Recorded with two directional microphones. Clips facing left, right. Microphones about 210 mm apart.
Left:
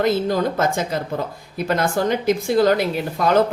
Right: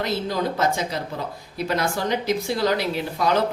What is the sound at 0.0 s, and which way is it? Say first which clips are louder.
Speech: left 6 dB; 50° left (ahead or behind).